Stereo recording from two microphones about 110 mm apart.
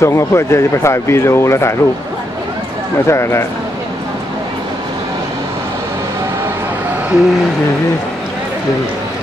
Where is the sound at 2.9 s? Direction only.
25° left (ahead or behind).